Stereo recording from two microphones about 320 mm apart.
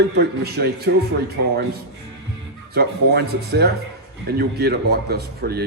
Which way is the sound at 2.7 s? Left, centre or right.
Right.